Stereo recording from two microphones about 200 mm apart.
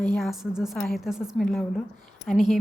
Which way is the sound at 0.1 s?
Centre (ahead or behind).